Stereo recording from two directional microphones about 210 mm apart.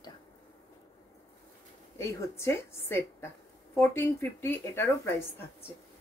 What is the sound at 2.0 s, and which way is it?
Speech, 15° left (ahead or behind).